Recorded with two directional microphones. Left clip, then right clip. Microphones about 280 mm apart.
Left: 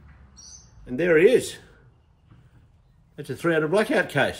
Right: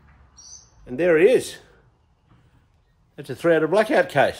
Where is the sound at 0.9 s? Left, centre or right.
Right.